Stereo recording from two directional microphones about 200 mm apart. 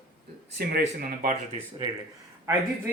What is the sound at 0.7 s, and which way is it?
Speech, 45° right (ahead or behind).